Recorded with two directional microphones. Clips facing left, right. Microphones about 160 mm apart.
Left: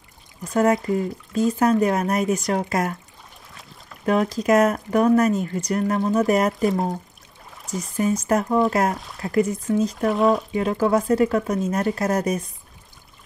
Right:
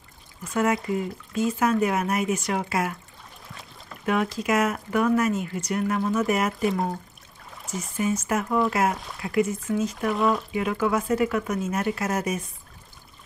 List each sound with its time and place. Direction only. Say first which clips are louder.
0.4 s speech: left 5 dB; 35° left (ahead or behind)
4.0 s speech: left 4 dB; 35° left (ahead or behind)
7.7 s speech: left 4 dB; 35° left (ahead or behind)